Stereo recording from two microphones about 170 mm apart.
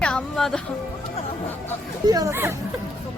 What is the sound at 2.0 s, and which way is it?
Speech, 20° right (ahead or behind).